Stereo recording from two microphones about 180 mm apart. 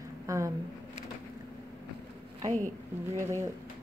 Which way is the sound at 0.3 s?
15° right (ahead or behind).